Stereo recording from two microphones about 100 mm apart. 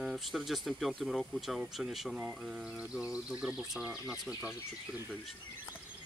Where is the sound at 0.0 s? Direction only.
Centre (ahead or behind).